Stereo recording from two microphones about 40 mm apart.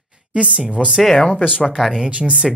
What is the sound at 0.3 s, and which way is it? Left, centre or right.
Speech, right.